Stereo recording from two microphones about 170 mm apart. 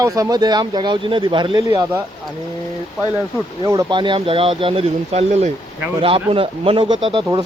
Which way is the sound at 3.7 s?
25° right (ahead or behind).